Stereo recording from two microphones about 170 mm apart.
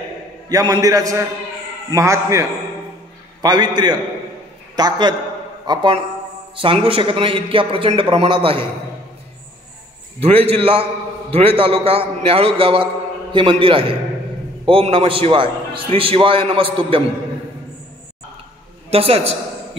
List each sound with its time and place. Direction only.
0.5 s a man's voice: 20° right (ahead or behind)
3.4 s a man's voice: 25° right (ahead or behind)
10.2 s a man's voice: 35° right (ahead or behind)
18.9 s a woman's voice: 35° right (ahead or behind)